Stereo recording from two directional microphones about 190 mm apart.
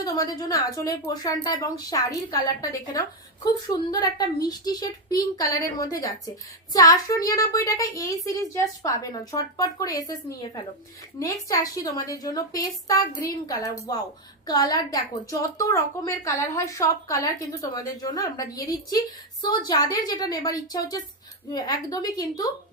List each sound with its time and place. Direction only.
0.0 s a woman's voice: 20° left (ahead or behind)
4.4 s a woman's voice: 20° left (ahead or behind)